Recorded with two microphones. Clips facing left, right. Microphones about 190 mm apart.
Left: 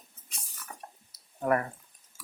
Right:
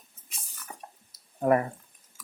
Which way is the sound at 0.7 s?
15° right (ahead or behind).